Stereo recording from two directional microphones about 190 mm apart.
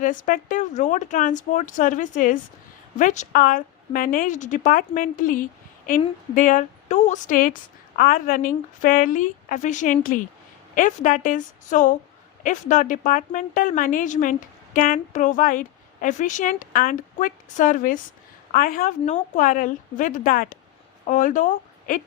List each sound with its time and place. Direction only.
0.0 s a woman's voice: 45° left (ahead or behind)